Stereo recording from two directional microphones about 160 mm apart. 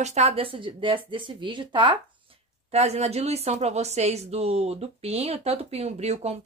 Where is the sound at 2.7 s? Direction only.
40° right (ahead or behind).